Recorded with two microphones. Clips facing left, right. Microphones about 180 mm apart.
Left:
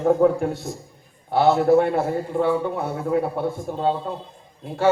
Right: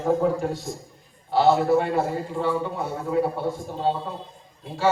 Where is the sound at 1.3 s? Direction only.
55° left (ahead or behind).